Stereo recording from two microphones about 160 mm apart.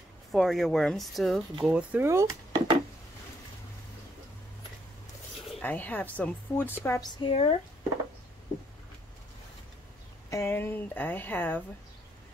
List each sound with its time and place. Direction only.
0.3 s speech: centre (ahead or behind); by 2.8 s 20° right (ahead or behind)
5.6 s speech: 10° left (ahead or behind)
7.2 s speech: 35° left (ahead or behind)
10.3 s speech: 15° left (ahead or behind)